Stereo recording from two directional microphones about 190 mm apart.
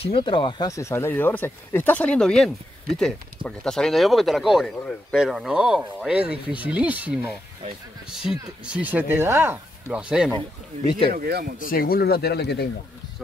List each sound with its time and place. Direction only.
0.0 s speech: 25° left (ahead or behind); by 7.2 s 10° right (ahead or behind)
8.6 s speech: 5° right (ahead or behind)
10.9 s speech: 30° left (ahead or behind)
11.1 s speech: 55° right (ahead or behind)
11.5 s speech: 50° left (ahead or behind)